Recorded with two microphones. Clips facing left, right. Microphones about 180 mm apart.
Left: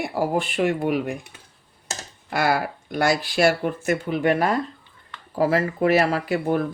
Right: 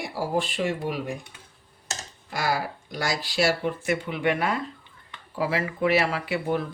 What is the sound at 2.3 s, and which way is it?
Speech, 60° left (ahead or behind).